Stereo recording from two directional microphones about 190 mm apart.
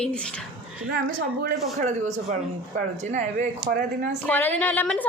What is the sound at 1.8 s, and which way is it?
A man's voice, 40° right (ahead or behind).